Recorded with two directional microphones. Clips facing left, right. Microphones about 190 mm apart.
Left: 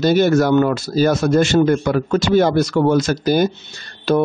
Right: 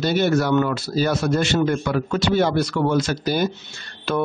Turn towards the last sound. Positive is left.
turn(degrees=35)  # may be behind; listen again after turning